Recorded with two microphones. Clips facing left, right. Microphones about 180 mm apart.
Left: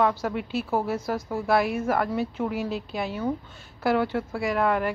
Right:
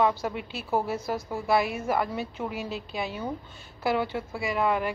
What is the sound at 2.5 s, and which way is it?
Speech, 45° left (ahead or behind).